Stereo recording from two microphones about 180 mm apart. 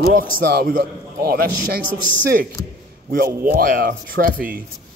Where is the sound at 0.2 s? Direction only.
55° right (ahead or behind).